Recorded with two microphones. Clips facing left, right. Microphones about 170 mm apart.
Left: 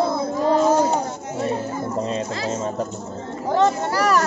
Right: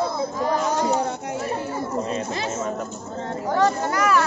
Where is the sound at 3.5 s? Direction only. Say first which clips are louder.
Left 2 dB; 20° left (ahead or behind).